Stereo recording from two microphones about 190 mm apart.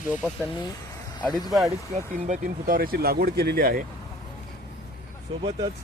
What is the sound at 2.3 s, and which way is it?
Speech, 50° right (ahead or behind).